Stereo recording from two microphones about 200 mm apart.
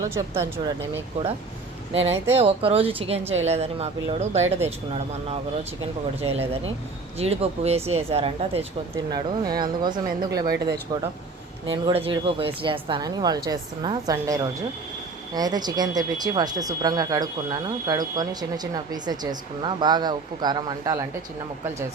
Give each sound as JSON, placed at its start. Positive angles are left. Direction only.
{"t": 0.0, "sound": "speech", "side_deg": -15}
{"t": 1.9, "sound": "a woman's voice", "side_deg": -30}
{"t": 6.2, "sound": "a woman's voice", "side_deg": -30}
{"t": 9.0, "sound": "speech", "side_deg": -20}
{"t": 11.7, "sound": "speech", "side_deg": -25}